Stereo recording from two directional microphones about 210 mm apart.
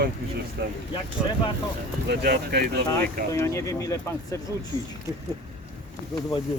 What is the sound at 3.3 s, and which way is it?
Speech, 15° left (ahead or behind).